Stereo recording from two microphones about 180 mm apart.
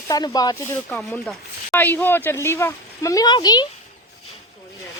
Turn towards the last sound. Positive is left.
turn(degrees=25)  # may be behind; listen again after turning